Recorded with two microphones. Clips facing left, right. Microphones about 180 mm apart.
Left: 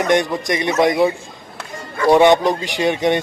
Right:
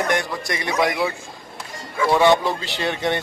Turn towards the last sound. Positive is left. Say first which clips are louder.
# left 6 dB
turn(degrees=15)  # may be behind; listen again after turning